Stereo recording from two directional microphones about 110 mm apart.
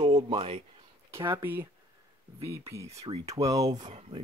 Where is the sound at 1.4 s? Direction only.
20° right (ahead or behind); by 3.9 s 35° right (ahead or behind).